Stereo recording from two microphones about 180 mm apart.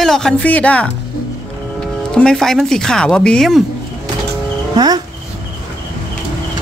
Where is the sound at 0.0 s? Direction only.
5° left (ahead or behind).